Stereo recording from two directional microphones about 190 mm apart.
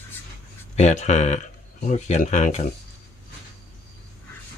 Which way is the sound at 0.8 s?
35° left (ahead or behind).